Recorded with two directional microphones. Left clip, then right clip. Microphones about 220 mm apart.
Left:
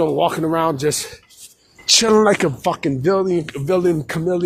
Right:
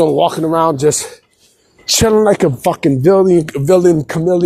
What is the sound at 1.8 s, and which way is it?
Speech, 30° right (ahead or behind).